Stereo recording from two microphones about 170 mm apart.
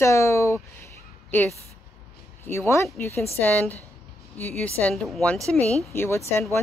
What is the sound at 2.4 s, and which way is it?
A woman's voice, 15° left (ahead or behind).